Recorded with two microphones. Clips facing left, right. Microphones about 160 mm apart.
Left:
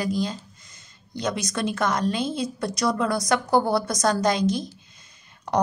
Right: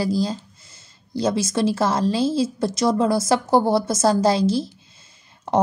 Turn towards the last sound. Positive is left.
turn(degrees=-25)  # may be behind; listen again after turning